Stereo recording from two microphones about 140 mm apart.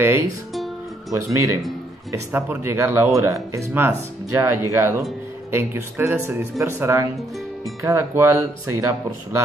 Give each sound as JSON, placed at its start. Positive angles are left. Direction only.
{"t": 1.1, "sound": "speech", "side_deg": -20}